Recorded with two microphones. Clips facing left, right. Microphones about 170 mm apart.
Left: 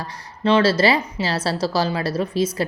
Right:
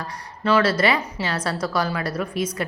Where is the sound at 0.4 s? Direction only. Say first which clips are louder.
Left 3 dB; 30° left (ahead or behind).